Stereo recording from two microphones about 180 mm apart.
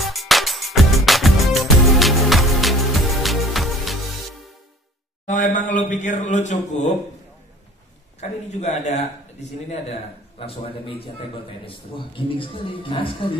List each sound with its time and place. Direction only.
0.0 s music: centre (ahead or behind)
5.2 s a man's voice: 45° left (ahead or behind)
8.2 s a man's voice: 40° left (ahead or behind)